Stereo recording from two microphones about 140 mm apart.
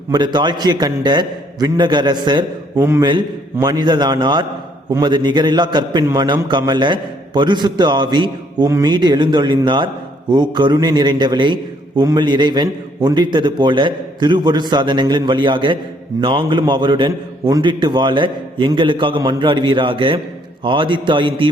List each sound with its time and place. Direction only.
0.1 s a man's voice: 30° right (ahead or behind)